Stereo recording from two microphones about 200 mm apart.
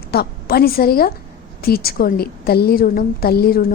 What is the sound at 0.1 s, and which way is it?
A woman's voice, 50° left (ahead or behind).